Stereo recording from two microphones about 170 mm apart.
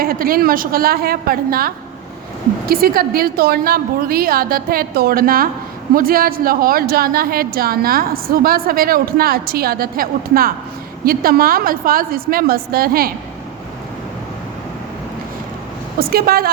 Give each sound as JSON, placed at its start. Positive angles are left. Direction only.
{"t": 0.0, "sound": "a woman's voice", "side_deg": -60}
{"t": 16.0, "sound": "a woman's voice", "side_deg": -60}